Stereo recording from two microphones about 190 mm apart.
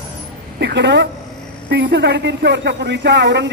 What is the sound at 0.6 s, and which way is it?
A woman's voice, 65° right (ahead or behind).